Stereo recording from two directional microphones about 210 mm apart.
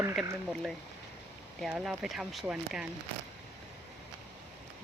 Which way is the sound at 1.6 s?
Centre (ahead or behind).